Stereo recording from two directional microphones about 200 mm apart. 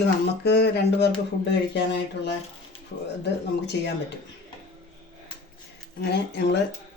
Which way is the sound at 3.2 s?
60° left (ahead or behind).